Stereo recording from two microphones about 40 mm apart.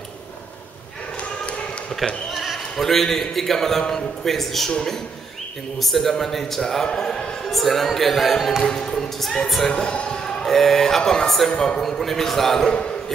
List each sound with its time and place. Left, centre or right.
2.3 s basketball bounce: centre
2.7 s a man's voice: centre
5.8 s music: centre
6.6 s a man's voice: centre
7.5 s music: centre
9.7 s a man's voice: centre
11.5 s a man's voice: left
12.0 s a man's voice: centre
12.6 s a man's voice: left